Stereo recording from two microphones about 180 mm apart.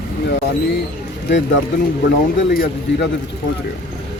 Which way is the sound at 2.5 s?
60° left (ahead or behind).